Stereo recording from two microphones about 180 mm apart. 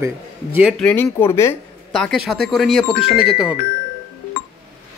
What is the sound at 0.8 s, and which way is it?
Speech, 10° left (ahead or behind).